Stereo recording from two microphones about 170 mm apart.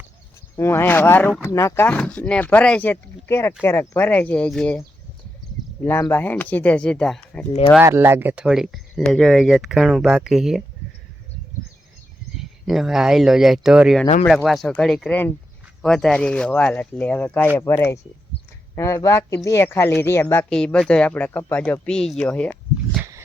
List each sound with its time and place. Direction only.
0.5 s speech: 15° left (ahead or behind)
5.8 s speech: 10° left (ahead or behind)
7.8 s speech: 15° right (ahead or behind)
12.4 s speech: centre (ahead or behind)